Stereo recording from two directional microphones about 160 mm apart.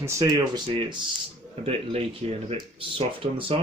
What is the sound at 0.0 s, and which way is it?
Speech, 20° right (ahead or behind).